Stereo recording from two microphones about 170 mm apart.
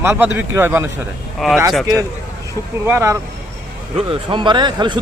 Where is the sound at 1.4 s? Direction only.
Centre (ahead or behind).